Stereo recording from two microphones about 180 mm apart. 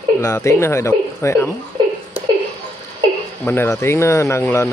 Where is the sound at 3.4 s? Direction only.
15° left (ahead or behind).